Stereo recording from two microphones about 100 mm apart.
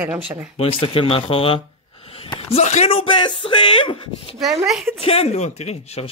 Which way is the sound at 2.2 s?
80° left.